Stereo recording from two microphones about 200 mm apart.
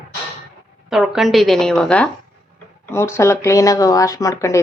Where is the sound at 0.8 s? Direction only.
Centre (ahead or behind); by 4.6 s 15° left (ahead or behind).